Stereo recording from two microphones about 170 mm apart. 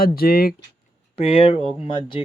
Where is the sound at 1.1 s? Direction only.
35° left (ahead or behind).